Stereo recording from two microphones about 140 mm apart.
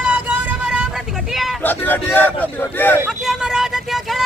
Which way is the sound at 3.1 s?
5° right (ahead or behind).